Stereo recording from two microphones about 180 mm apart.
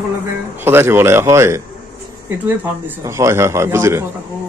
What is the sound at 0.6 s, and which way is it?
Speech, 15° right (ahead or behind).